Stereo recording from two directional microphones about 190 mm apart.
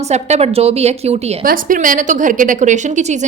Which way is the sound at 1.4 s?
45° right (ahead or behind).